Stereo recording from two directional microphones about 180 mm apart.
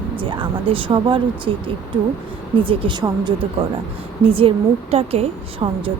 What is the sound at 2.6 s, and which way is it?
A woman's voice, 30° right (ahead or behind).